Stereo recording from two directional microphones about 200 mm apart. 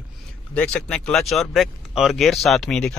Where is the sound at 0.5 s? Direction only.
5° left (ahead or behind).